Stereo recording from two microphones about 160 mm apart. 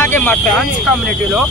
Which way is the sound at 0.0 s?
10° left (ahead or behind).